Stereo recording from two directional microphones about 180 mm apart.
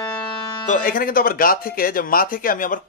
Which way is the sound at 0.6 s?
45° left (ahead or behind).